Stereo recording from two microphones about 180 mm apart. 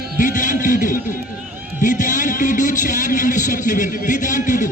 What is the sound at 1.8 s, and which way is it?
A man's voice, 45° left (ahead or behind).